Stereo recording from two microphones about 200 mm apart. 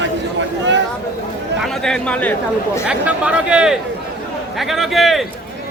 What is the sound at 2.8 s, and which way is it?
Speech, 5° right (ahead or behind).